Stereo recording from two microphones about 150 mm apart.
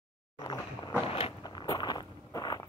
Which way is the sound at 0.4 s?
25° left (ahead or behind).